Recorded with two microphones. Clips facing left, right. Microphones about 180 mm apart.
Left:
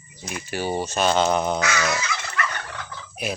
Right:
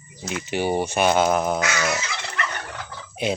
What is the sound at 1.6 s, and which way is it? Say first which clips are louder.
Dog: even; 15° right (ahead or behind).